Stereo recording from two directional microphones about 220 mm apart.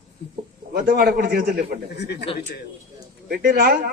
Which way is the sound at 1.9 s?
50° left (ahead or behind).